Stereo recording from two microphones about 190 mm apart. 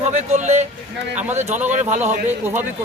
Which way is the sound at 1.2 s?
10° right (ahead or behind).